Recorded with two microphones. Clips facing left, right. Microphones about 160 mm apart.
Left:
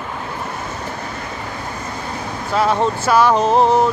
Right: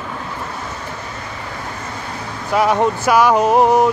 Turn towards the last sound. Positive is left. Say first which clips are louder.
# right 1 dB
turn(degrees=-15)  # may be behind; listen again after turning